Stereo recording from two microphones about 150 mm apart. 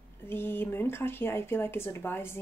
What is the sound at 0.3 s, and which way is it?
Speech, 15° left (ahead or behind).